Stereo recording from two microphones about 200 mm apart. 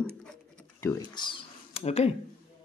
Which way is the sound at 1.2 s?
25° left (ahead or behind).